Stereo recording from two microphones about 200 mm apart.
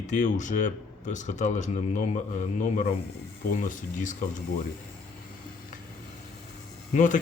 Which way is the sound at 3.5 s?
40° left (ahead or behind).